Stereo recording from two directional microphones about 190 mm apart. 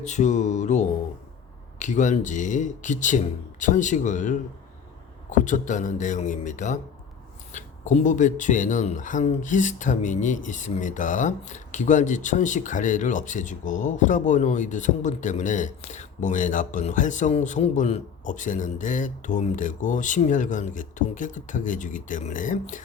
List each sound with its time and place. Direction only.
0.0 s speech: 40° left (ahead or behind)